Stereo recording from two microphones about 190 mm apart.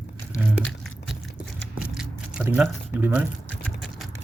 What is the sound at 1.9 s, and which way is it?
Squish, 5° right (ahead or behind).